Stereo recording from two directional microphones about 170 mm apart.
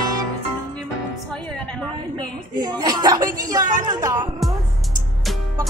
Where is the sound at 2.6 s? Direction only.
25° right (ahead or behind).